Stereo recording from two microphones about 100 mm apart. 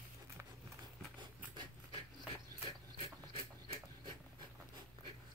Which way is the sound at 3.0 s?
60° right (ahead or behind).